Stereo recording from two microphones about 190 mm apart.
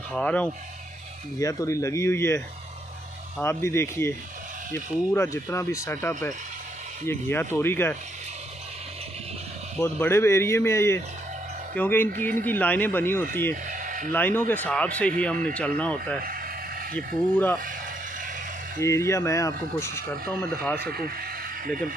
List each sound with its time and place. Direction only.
0.1 s speech: 5° left (ahead or behind)
9.8 s speech: 10° left (ahead or behind)
13.7 s a sound: 45° right (ahead or behind)
14.1 s speech: 10° left (ahead or behind)
18.8 s speech: 15° left (ahead or behind)
20.9 s speech: 50° right (ahead or behind)